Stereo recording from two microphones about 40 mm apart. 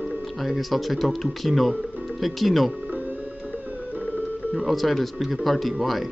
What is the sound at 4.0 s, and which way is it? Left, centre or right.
Music, left.